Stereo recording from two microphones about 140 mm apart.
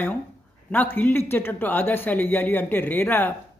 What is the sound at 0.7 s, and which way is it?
Speech, 15° left (ahead or behind).